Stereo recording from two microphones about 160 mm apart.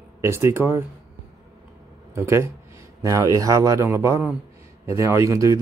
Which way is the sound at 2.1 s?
15° right (ahead or behind).